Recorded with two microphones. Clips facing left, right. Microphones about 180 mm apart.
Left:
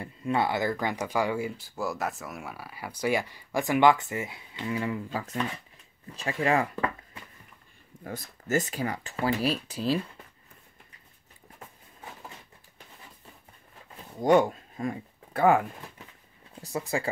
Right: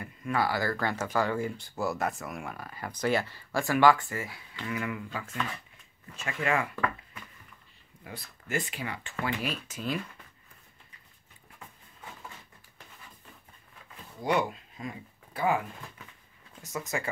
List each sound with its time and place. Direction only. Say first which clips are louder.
0.0 s speech: left 2 dB; 25° left (ahead or behind)
8.0 s speech: left 6 dB; 45° left (ahead or behind)
14.2 s speech: left 7 dB; 45° left (ahead or behind)
16.6 s speech: left 4 dB; 30° left (ahead or behind)